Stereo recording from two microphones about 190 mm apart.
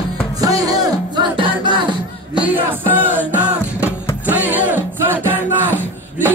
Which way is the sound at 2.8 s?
10° right (ahead or behind).